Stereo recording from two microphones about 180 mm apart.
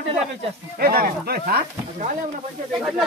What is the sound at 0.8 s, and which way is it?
Speech, 55° right (ahead or behind).